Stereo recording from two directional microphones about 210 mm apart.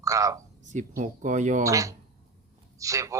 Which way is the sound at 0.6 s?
35° right (ahead or behind).